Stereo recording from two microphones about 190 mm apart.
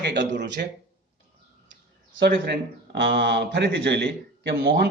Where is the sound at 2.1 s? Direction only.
60° right (ahead or behind).